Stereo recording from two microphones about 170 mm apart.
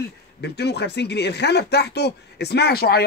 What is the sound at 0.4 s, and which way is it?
Speech, 75° left (ahead or behind).